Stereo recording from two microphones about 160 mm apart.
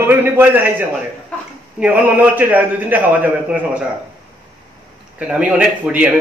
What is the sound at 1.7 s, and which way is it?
A man's voice, 10° right (ahead or behind).